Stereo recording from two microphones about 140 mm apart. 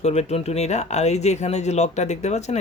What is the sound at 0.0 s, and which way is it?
Speech, 50° left (ahead or behind).